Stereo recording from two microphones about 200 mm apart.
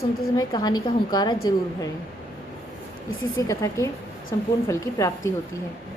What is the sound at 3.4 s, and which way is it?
A woman's voice, 15° left (ahead or behind).